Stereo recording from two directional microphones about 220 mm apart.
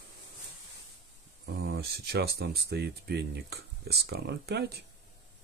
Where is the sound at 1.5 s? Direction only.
45° right (ahead or behind).